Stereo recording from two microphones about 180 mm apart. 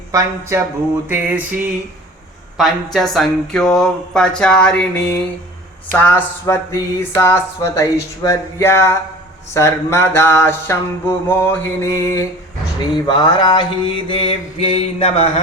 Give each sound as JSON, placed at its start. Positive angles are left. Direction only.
{"t": 0.1, "sound": "music", "side_deg": -15}
{"t": 2.6, "sound": "speech", "side_deg": 0}
{"t": 5.9, "sound": "a sound", "side_deg": 10}
{"t": 12.8, "sound": "mantra", "side_deg": 25}